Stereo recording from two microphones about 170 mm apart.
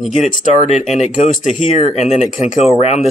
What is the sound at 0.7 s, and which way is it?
Speech, 45° left (ahead or behind).